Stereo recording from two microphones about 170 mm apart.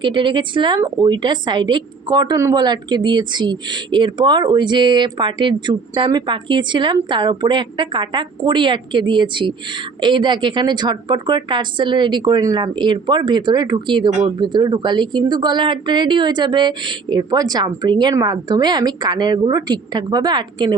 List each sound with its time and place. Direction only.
0.0 s a woman's voice: 30° right (ahead or behind)